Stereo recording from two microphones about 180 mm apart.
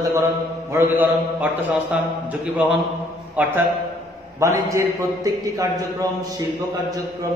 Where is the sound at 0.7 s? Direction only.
10° right (ahead or behind).